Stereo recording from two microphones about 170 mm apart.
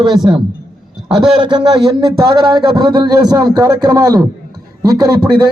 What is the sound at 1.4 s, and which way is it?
A man's voice, 25° right (ahead or behind).